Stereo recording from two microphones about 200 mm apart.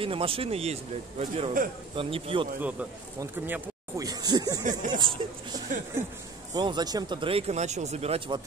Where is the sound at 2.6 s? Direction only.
10° right (ahead or behind).